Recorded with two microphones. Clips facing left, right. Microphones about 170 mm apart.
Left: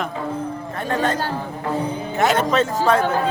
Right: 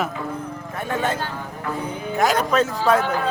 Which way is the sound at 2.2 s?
Centre (ahead or behind).